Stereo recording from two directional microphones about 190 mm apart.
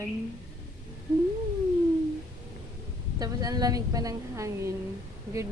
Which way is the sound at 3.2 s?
20° right (ahead or behind).